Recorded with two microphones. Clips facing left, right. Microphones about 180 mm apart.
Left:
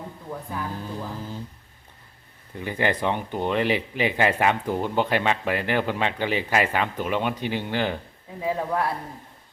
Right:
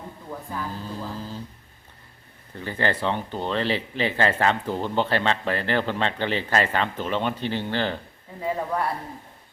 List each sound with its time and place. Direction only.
0.5 s speech: 15° left (ahead or behind)
2.6 s speech: 15° left (ahead or behind)